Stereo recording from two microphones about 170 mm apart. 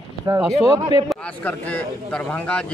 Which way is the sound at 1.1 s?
10° left (ahead or behind).